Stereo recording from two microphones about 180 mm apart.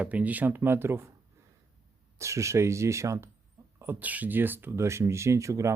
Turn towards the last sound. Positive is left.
turn(degrees=-15)  # may be behind; listen again after turning